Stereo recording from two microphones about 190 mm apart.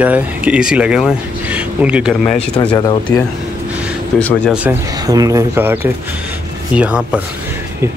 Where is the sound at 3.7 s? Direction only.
5° right (ahead or behind).